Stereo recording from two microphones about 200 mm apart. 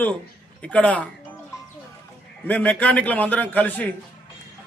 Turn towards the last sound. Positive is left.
turn(degrees=10)  # may be behind; listen again after turning